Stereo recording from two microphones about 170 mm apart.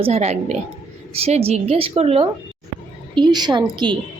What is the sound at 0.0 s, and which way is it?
A woman's voice, 40° right (ahead or behind).